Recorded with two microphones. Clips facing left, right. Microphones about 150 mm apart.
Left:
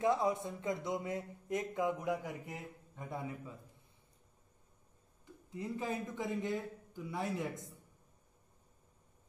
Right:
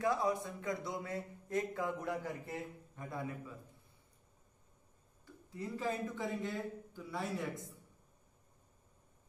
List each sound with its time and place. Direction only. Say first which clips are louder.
0.0 s speech: left 2 dB; 20° left (ahead or behind)
5.2 s a man's voice: left 1 dB; 20° left (ahead or behind)